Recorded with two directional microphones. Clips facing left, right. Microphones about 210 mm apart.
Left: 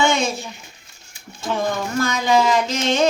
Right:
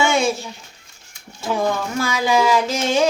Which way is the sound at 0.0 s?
10° right (ahead or behind).